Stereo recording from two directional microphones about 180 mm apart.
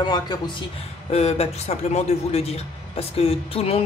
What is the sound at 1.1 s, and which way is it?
A man's voice, 35° left (ahead or behind).